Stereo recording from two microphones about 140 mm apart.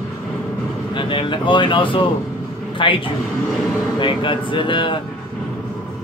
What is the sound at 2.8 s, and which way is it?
Speech, 35° left (ahead or behind).